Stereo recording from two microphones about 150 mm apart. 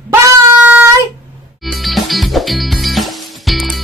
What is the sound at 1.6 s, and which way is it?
Music, centre (ahead or behind).